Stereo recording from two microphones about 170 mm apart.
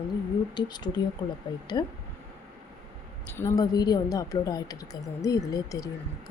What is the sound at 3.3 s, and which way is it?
A woman's voice, 20° left (ahead or behind).